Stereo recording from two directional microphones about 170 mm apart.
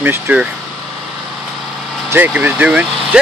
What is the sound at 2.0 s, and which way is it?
Speech, 10° right (ahead or behind).